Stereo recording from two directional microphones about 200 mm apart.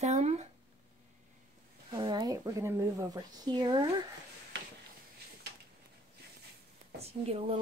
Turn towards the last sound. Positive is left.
turn(degrees=-30)  # may be behind; listen again after turning